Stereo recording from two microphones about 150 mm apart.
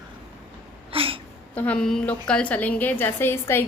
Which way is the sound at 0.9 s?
35° right (ahead or behind).